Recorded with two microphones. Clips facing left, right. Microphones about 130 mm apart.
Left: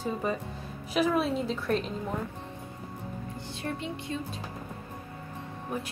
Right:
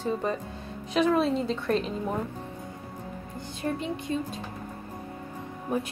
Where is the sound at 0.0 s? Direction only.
5° left (ahead or behind).